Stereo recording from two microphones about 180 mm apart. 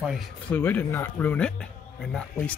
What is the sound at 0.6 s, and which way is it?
Speech, 10° left (ahead or behind).